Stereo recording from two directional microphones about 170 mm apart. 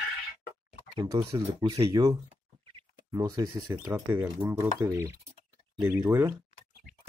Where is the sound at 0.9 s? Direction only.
20° right (ahead or behind).